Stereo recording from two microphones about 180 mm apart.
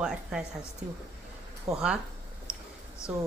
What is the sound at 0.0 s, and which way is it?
Speech, 5° right (ahead or behind).